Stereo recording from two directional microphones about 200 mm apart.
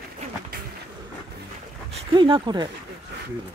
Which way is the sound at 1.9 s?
25° right (ahead or behind).